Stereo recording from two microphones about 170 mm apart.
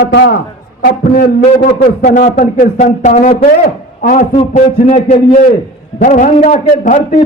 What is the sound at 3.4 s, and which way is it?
Speech, 60° left (ahead or behind).